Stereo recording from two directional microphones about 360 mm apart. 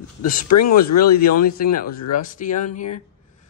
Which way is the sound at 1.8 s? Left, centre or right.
Left.